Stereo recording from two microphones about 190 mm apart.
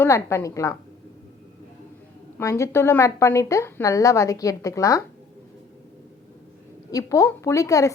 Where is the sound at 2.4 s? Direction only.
15° left (ahead or behind).